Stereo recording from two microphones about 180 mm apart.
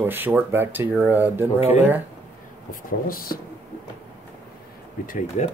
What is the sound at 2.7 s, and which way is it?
Speech, 50° left (ahead or behind).